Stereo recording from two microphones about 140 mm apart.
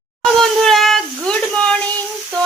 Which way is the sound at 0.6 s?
Centre (ahead or behind).